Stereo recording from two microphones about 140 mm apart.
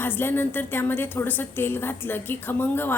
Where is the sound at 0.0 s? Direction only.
15° left (ahead or behind).